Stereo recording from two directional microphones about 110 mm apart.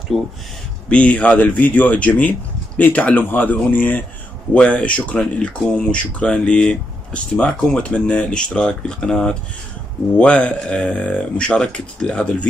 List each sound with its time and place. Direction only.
0.1 s speech: 5° right (ahead or behind)
0.8 s speech: 10° left (ahead or behind)